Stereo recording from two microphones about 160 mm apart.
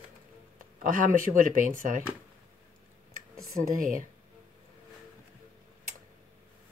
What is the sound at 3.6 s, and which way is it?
Speech, 55° right (ahead or behind).